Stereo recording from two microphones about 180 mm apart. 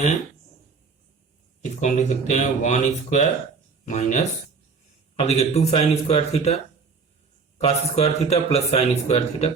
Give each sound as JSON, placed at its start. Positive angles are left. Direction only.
{"t": 1.8, "sound": "speech", "side_deg": 40}
{"t": 7.6, "sound": "speech", "side_deg": 35}